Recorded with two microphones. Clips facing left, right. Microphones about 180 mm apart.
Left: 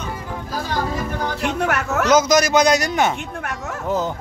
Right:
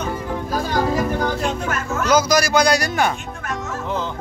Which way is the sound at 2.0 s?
20° left (ahead or behind).